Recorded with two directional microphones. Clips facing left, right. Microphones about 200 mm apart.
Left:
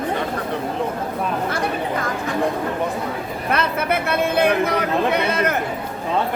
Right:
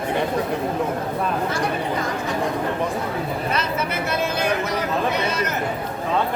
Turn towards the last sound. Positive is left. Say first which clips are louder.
# left 4 dB
turn(degrees=55)  # may be behind; listen again after turning